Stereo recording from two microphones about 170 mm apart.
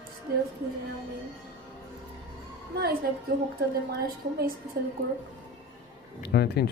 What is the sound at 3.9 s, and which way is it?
Speech, 65° right (ahead or behind).